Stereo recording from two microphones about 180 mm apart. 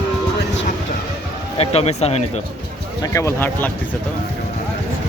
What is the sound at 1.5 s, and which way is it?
Speech, 35° left (ahead or behind).